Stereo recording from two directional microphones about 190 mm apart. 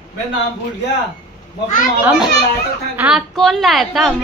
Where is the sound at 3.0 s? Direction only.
Centre (ahead or behind).